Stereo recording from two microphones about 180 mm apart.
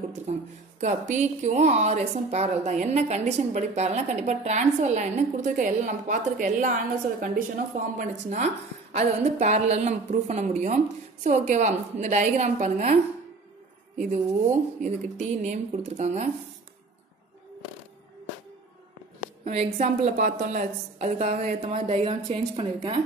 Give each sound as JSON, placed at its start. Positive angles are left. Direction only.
{"t": 0.3, "sound": "a woman's voice", "side_deg": -40}
{"t": 14.8, "sound": "a woman's voice", "side_deg": -40}
{"t": 19.5, "sound": "a woman's voice", "side_deg": -35}
{"t": 21.5, "sound": "speech", "side_deg": -30}